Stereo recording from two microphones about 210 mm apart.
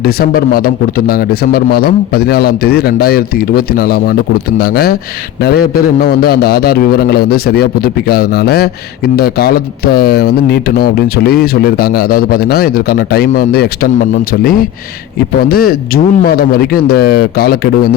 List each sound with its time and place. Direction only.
0.0 s speech: 45° left (ahead or behind)
15.4 s speech: 45° left (ahead or behind)